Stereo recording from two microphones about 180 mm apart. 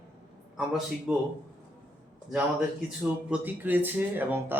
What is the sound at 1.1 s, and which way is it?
Speech, 10° right (ahead or behind).